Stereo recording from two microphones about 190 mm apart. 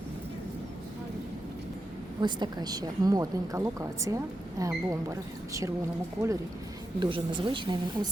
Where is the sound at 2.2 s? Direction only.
25° right (ahead or behind).